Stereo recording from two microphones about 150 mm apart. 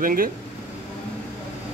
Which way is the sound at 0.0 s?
70° right (ahead or behind).